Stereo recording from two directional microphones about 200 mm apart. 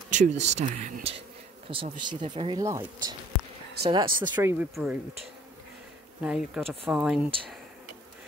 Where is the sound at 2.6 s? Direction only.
15° right (ahead or behind).